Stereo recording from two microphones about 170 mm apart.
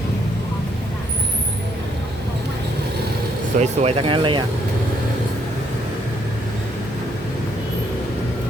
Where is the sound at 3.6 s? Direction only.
35° right (ahead or behind).